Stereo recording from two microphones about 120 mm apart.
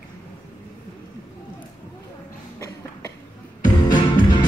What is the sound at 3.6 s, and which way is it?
Music, 35° left (ahead or behind).